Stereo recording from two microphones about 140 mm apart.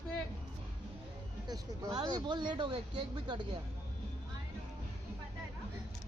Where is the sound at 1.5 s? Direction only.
30° right (ahead or behind).